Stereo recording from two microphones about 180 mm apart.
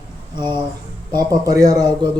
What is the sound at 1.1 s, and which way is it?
Speech, 20° right (ahead or behind).